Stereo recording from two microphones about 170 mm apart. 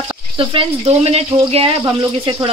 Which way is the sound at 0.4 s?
30° right (ahead or behind).